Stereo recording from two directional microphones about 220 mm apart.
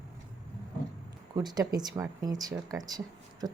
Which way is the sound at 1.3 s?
20° right (ahead or behind).